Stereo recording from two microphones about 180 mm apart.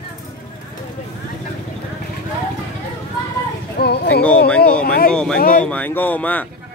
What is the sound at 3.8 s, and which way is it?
Speech, 65° left (ahead or behind).